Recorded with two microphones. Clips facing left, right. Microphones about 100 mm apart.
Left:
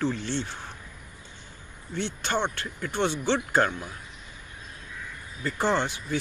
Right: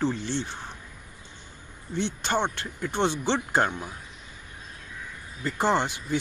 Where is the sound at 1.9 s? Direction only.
20° right (ahead or behind).